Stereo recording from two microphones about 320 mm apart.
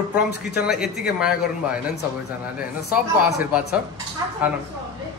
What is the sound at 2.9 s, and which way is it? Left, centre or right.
Speech, centre.